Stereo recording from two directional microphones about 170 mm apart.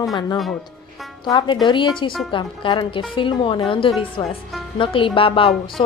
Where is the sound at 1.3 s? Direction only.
25° left (ahead or behind).